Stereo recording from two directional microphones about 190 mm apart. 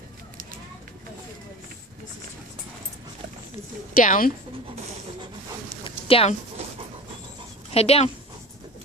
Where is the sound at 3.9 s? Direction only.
45° left (ahead or behind).